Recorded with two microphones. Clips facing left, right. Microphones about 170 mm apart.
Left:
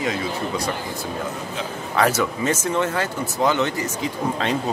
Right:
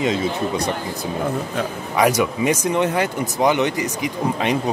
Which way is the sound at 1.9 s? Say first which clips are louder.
Right 3 dB; 15° right (ahead or behind).